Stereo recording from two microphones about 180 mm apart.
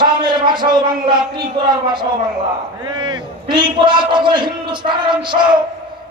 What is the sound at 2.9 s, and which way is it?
Speech, 25° right (ahead or behind).